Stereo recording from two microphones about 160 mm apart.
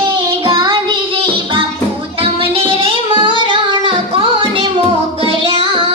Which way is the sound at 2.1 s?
35° right (ahead or behind).